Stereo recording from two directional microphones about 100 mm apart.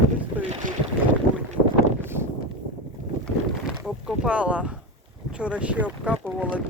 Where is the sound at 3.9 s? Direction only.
5° right (ahead or behind).